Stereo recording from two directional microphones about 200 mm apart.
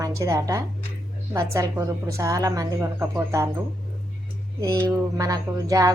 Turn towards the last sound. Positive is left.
turn(degrees=-15)  # may be behind; listen again after turning